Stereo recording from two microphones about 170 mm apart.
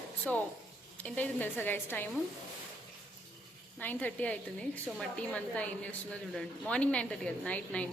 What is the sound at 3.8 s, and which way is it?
A woman's voice, 10° left (ahead or behind).